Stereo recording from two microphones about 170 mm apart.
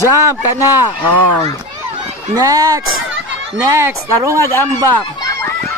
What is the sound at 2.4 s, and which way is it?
A man's voice, 20° right (ahead or behind).